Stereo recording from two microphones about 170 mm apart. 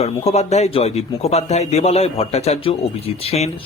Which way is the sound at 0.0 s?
40° left (ahead or behind).